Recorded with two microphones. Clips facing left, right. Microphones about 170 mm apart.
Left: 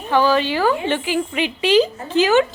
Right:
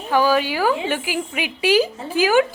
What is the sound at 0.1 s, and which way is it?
Speech, 10° right (ahead or behind).